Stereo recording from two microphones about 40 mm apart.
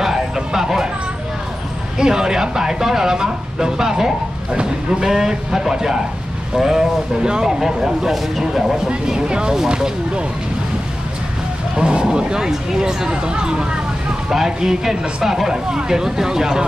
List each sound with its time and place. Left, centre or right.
0.0 s a sound: centre
2.0 s speech: centre
4.5 s speech: right
5.0 s speech: centre
8.8 s speech: right
11.7 s speech: right